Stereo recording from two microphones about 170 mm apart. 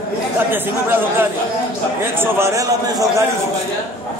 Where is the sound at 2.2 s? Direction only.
15° right (ahead or behind).